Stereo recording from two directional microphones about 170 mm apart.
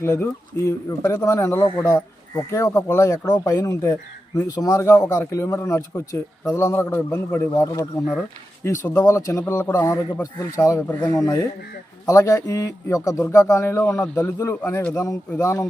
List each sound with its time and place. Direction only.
0.0 s speech: 15° left (ahead or behind)